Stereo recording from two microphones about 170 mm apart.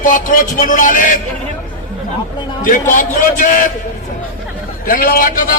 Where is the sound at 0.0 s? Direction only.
50° left (ahead or behind).